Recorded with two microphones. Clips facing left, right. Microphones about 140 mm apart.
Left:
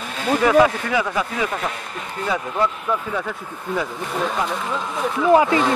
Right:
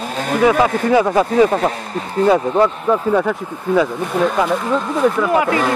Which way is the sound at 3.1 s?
75° right (ahead or behind).